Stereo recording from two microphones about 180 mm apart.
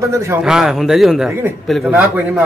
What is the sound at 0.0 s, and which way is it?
Speech, 15° right (ahead or behind).